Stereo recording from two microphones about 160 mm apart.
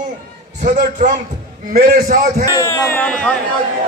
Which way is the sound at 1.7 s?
85° right.